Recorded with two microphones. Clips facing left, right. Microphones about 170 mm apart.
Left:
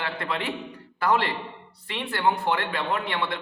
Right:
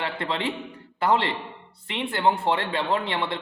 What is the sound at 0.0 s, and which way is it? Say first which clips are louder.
A man's voice: right 2 dB; 25° right (ahead or behind).